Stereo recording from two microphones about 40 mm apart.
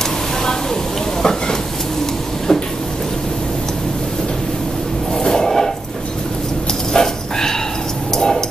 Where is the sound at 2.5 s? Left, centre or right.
Centre.